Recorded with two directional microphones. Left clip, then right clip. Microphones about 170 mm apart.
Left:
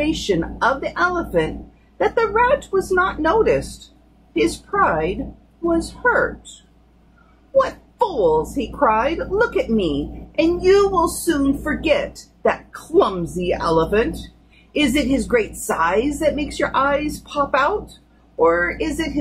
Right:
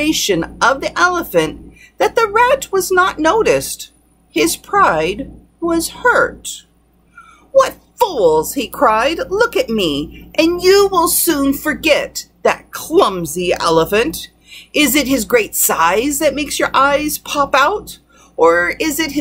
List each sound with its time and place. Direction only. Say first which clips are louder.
0.0 s speech: right 5 dB; 15° right (ahead or behind)
7.5 s speech: right 5 dB; 15° right (ahead or behind)